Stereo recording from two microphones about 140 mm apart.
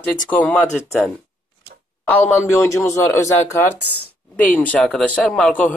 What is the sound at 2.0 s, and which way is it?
Speech, 15° left (ahead or behind).